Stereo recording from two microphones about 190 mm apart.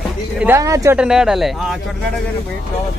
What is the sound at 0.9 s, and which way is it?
Speech, 5° right (ahead or behind).